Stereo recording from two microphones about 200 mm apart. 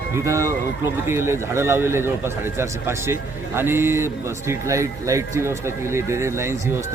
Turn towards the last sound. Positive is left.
turn(degrees=-15)  # may be behind; listen again after turning